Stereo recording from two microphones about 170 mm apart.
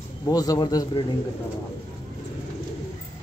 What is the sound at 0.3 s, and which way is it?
Speech, 20° left (ahead or behind).